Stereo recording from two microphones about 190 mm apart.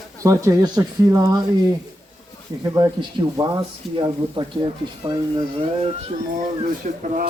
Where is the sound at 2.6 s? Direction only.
15° right (ahead or behind).